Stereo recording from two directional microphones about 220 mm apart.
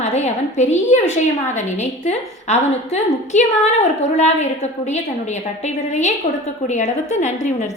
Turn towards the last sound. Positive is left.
turn(degrees=30)  # may be behind; listen again after turning